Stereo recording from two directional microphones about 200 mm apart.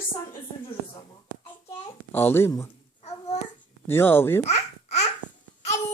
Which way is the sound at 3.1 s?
35° left (ahead or behind).